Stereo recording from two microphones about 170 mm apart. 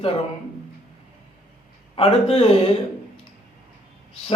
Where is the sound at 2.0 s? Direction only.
35° left (ahead or behind).